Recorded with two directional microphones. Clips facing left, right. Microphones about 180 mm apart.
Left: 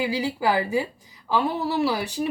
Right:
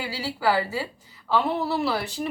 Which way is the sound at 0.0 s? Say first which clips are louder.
Left 3 dB; 15° left (ahead or behind).